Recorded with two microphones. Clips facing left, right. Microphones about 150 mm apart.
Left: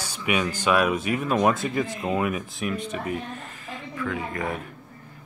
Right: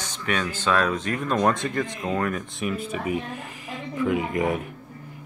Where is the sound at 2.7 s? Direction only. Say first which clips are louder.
Right 2 dB; 5° right (ahead or behind).